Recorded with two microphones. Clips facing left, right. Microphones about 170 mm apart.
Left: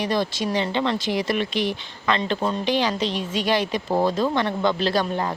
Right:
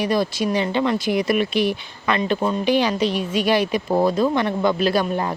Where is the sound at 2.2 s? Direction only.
10° right (ahead or behind).